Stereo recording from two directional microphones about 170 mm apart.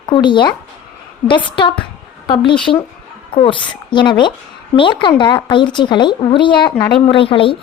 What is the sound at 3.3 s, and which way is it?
A woman's voice, 30° left (ahead or behind).